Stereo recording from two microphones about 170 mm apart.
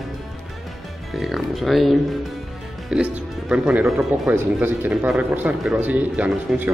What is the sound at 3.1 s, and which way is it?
Speech, 10° right (ahead or behind).